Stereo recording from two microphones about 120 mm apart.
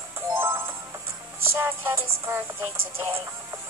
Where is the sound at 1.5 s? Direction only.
20° right (ahead or behind).